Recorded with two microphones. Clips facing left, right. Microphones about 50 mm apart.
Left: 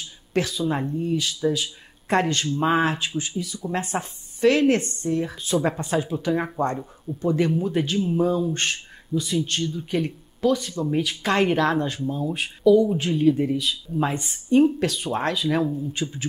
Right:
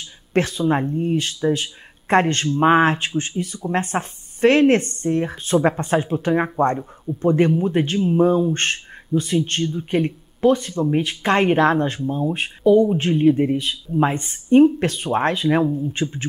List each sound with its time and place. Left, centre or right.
0.3 s speech: right
15.6 s speech: centre